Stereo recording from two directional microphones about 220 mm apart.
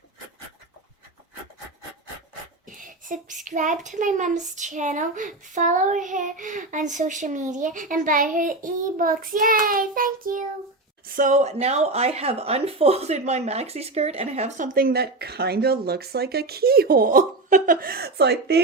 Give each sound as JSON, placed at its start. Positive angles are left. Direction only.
{"t": 2.7, "sound": "speech", "side_deg": -35}